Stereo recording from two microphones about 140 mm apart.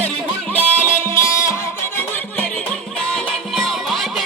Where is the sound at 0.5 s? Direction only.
15° left (ahead or behind).